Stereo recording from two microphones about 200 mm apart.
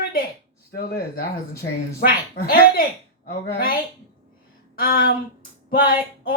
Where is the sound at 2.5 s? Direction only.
45° left (ahead or behind).